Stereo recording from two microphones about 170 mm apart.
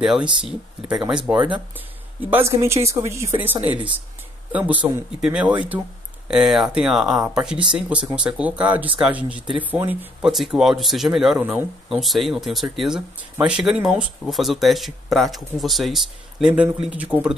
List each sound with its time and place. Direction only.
0.0 s speech: 5° right (ahead or behind)
2.3 s speech: 15° right (ahead or behind)